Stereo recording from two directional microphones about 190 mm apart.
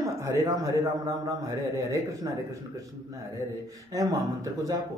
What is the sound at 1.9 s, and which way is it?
Speech, 15° right (ahead or behind).